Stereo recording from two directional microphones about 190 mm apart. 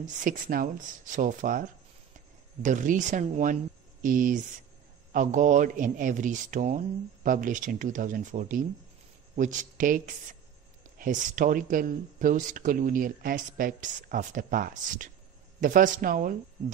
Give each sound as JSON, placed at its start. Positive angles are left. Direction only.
{"t": 0.0, "sound": "speech", "side_deg": -45}